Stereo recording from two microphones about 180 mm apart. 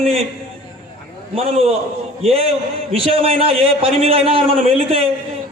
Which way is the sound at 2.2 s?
30° right (ahead or behind).